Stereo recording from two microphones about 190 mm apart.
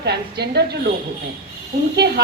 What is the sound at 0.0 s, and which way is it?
Speech, 60° right (ahead or behind).